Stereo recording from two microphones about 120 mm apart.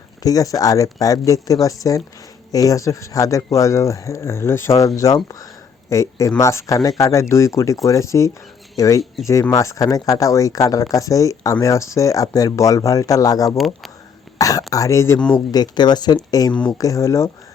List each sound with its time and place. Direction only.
0.2 s speech: 30° left (ahead or behind)
14.3 s throat clearing: 30° left (ahead or behind)
14.7 s speech: 25° left (ahead or behind)